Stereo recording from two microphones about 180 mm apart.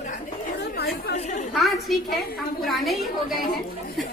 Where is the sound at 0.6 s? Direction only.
65° left (ahead or behind).